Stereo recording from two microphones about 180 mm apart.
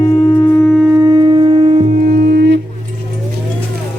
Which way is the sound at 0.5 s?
5° left (ahead or behind).